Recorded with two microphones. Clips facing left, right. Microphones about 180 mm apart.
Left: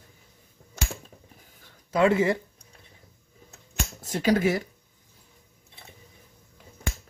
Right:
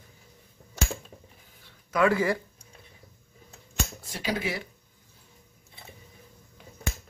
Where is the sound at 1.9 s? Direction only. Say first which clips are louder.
Left 2 dB; 25° left (ahead or behind).